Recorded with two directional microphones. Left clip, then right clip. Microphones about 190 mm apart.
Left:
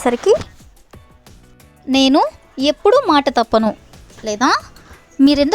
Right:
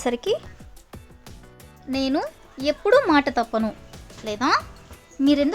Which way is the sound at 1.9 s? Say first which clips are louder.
Left 12 dB; 40° left (ahead or behind).